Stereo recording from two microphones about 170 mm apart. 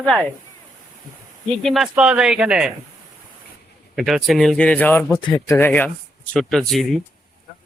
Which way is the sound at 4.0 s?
Centre (ahead or behind).